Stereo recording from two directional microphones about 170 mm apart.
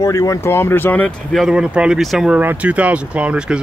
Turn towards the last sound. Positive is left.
turn(degrees=-5)  # may be behind; listen again after turning